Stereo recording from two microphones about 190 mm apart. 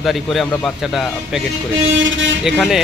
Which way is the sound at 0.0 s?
Centre (ahead or behind).